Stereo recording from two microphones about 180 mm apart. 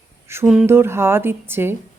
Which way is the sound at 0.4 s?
5° right (ahead or behind).